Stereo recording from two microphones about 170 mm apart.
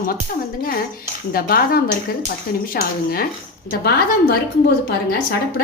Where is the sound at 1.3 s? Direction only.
60° left (ahead or behind).